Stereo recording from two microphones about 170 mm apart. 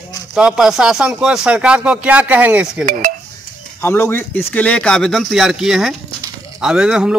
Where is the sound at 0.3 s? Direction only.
5° right (ahead or behind).